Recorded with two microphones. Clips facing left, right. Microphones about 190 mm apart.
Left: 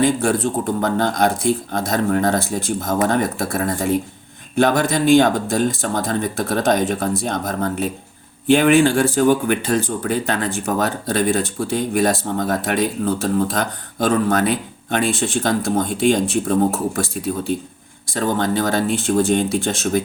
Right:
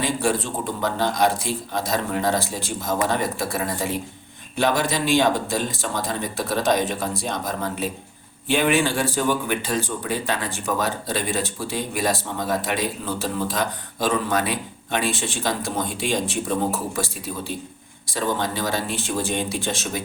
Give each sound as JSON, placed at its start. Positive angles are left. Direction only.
{"t": 0.0, "sound": "speech", "side_deg": 50}
{"t": 18.1, "sound": "speech", "side_deg": 50}